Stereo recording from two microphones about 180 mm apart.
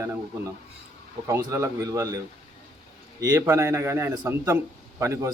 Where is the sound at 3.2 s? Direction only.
15° right (ahead or behind).